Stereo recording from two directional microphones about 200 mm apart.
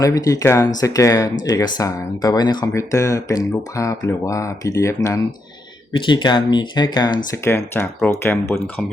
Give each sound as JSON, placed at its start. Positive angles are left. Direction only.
{"t": 0.0, "sound": "speech", "side_deg": 15}